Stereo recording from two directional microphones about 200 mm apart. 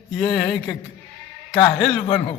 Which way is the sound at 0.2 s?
5° left (ahead or behind).